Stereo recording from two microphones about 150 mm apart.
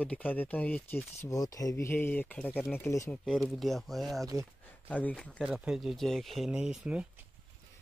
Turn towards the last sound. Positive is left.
turn(degrees=-5)  # may be behind; listen again after turning